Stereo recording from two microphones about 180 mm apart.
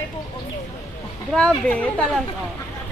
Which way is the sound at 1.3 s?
5° left (ahead or behind).